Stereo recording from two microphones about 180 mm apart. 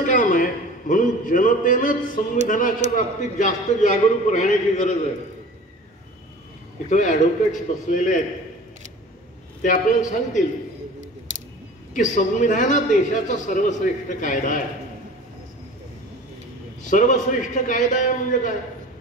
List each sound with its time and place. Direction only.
0.0 s a man's voice: 45° left (ahead or behind)
6.9 s a man's voice: 45° left (ahead or behind)
9.6 s a man's voice: 45° left (ahead or behind)
11.9 s a man's voice: 45° left (ahead or behind)
16.8 s a man's voice: 45° left (ahead or behind)